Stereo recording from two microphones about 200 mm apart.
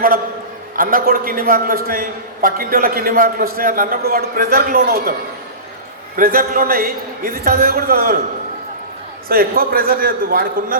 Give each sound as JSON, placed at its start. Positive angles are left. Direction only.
{"t": 0.8, "sound": "a man's voice", "side_deg": -45}
{"t": 6.1, "sound": "a man's voice", "side_deg": -45}
{"t": 9.3, "sound": "a man's voice", "side_deg": -50}